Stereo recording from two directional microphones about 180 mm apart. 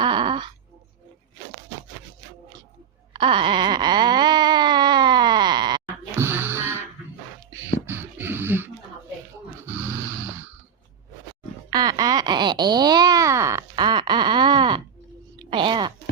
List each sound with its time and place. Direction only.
0.0 s groan: 25° right (ahead or behind)
3.1 s wail: 30° right (ahead or behind)
6.2 s music: 10° right (ahead or behind)
7.9 s a sound: 10° right (ahead or behind)
9.7 s music: 15° right (ahead or behind)
11.7 s a sound: 20° right (ahead or behind)